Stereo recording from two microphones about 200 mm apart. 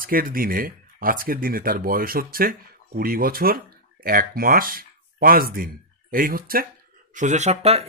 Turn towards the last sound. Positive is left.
turn(degrees=-35)  # may be behind; listen again after turning